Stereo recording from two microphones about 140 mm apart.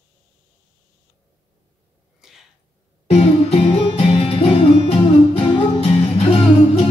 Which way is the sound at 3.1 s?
50° left (ahead or behind).